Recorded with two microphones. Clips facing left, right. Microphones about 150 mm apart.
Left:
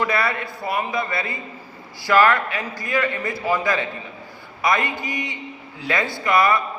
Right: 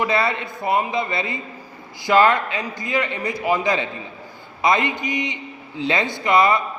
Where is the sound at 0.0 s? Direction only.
20° right (ahead or behind).